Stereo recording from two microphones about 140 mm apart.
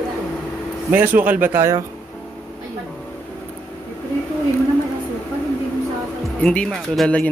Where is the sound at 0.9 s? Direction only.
10° right (ahead or behind).